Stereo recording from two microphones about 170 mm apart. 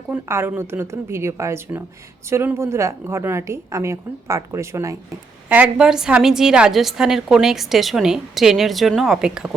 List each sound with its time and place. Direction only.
0.1 s a woman's voice: 15° right (ahead or behind)